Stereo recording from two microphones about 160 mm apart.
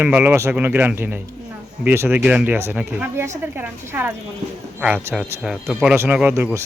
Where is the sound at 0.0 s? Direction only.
10° right (ahead or behind).